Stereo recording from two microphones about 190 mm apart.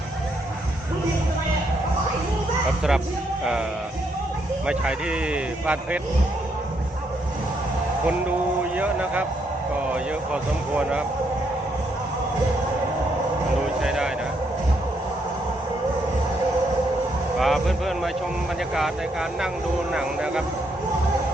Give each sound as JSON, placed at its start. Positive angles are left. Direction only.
{"t": 4.6, "sound": "speech", "side_deg": -5}
{"t": 8.7, "sound": "speech", "side_deg": -10}
{"t": 13.8, "sound": "vehicle", "side_deg": -5}
{"t": 17.3, "sound": "speech", "side_deg": 0}
{"t": 19.9, "sound": "speech", "side_deg": -5}